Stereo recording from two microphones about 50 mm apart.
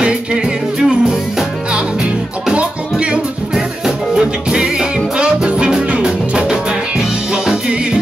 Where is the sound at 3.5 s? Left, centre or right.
Centre.